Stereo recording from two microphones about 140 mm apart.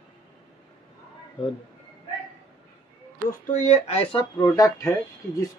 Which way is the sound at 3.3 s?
60° left (ahead or behind).